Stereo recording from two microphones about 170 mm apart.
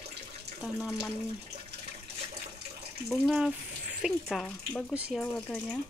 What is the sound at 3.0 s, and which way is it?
Speech, 5° right (ahead or behind).